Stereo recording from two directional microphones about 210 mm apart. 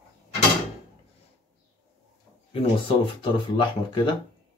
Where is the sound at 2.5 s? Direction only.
25° left (ahead or behind).